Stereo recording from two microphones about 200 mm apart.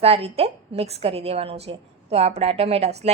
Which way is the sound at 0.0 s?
30° right (ahead or behind).